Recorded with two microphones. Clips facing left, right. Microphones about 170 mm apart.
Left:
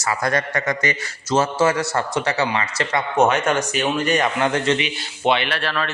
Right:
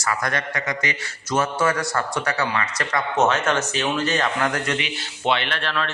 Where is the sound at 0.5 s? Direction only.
45° left (ahead or behind).